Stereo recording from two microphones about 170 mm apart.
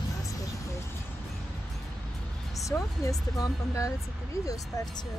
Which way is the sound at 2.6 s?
20° left (ahead or behind).